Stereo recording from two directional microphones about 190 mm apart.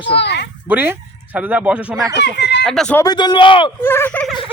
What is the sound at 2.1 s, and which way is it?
Speech, 60° left (ahead or behind).